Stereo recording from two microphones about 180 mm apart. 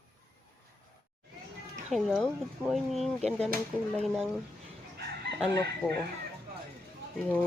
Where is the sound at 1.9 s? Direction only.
Centre (ahead or behind).